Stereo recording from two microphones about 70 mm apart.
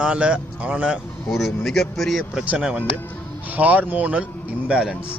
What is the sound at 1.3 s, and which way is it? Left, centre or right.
Speech, centre.